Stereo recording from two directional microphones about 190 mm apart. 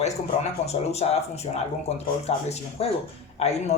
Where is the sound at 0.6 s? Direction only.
35° left (ahead or behind).